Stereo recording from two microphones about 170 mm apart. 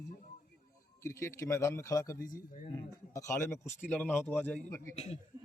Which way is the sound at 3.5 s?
5° left (ahead or behind).